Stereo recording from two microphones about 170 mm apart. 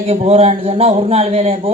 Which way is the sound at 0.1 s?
40° right (ahead or behind).